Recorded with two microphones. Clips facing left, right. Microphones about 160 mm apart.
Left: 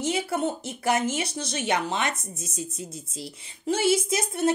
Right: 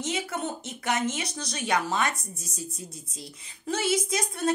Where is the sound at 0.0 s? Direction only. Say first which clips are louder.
Left 5 dB; 30° left (ahead or behind).